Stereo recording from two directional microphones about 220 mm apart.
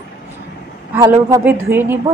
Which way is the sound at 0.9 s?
15° right (ahead or behind).